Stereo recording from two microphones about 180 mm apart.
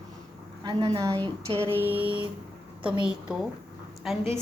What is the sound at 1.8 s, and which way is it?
Speech, 10° right (ahead or behind).